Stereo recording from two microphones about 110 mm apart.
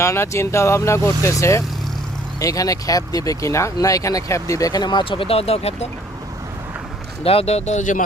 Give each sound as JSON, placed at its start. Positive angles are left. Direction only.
{"t": 0.0, "sound": "speech", "side_deg": 25}
{"t": 7.3, "sound": "speech", "side_deg": 70}